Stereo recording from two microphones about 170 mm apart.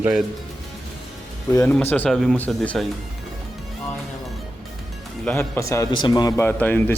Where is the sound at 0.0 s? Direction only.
5° right (ahead or behind).